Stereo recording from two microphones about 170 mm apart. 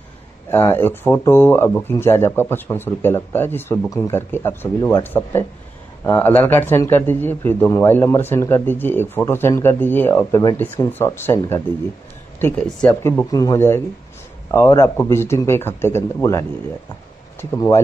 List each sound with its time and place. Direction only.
0.5 s a man's voice: 15° left (ahead or behind)
13.3 s a man's voice: 20° left (ahead or behind)